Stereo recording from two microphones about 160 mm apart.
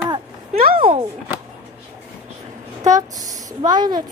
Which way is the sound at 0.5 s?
65° right (ahead or behind).